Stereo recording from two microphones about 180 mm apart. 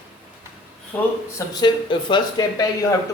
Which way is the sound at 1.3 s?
25° left (ahead or behind).